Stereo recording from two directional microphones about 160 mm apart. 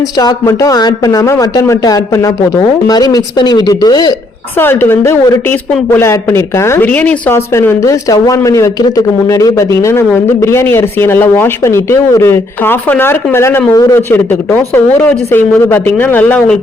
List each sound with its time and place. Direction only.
0.2 s speech: 20° left (ahead or behind)
4.5 s speech: 15° left (ahead or behind)